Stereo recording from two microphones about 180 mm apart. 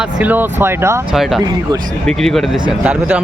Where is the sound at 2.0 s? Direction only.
Centre (ahead or behind).